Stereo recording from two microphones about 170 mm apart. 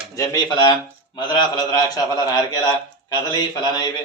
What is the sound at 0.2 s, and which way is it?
A man's voice, 25° left (ahead or behind).